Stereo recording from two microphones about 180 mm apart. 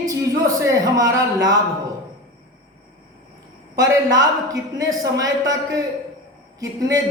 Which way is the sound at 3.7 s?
20° right (ahead or behind).